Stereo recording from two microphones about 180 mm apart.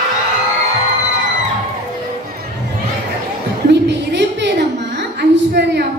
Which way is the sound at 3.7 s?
70° right (ahead or behind).